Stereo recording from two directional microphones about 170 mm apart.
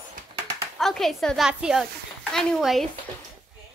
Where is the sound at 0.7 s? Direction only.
Centre (ahead or behind).